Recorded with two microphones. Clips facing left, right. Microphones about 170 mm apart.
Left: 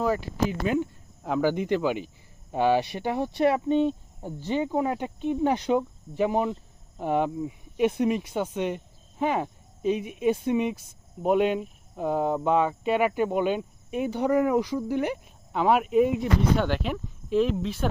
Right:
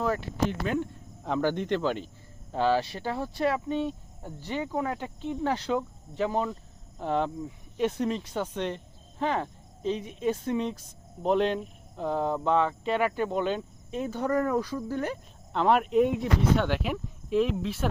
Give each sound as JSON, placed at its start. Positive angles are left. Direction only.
{"t": 0.0, "sound": "speech", "side_deg": 5}